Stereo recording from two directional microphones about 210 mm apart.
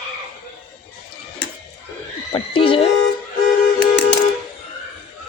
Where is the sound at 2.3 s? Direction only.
25° left (ahead or behind).